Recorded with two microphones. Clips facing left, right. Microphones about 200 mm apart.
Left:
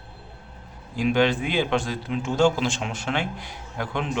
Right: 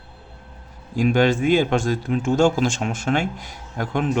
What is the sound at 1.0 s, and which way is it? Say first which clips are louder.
Speech: right 3 dB; 45° right (ahead or behind).